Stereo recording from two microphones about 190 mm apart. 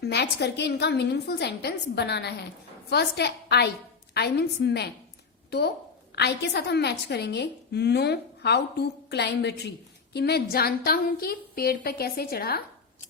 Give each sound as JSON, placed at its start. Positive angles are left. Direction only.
{"t": 0.0, "sound": "a woman's voice", "side_deg": 60}